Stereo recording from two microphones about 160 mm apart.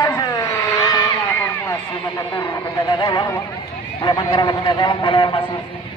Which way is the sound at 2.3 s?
20° left (ahead or behind).